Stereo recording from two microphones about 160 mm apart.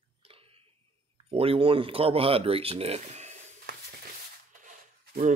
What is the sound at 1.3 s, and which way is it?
Speech, 35° right (ahead or behind).